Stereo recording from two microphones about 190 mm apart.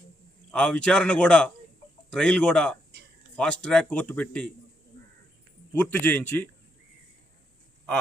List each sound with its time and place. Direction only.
0.5 s a man's voice: 5° left (ahead or behind)
5.7 s speech: 10° left (ahead or behind)